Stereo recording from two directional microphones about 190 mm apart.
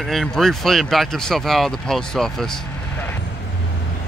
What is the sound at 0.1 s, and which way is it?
Speech, centre (ahead or behind).